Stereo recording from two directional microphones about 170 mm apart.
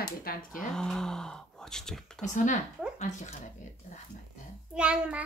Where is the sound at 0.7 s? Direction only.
5° left (ahead or behind).